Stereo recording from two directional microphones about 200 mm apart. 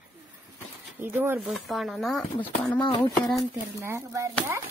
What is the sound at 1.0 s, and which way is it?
Speech, 10° right (ahead or behind).